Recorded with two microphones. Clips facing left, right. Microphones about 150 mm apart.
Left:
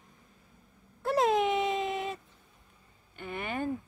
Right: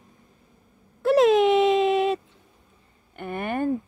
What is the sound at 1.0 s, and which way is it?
Wail, 90° right.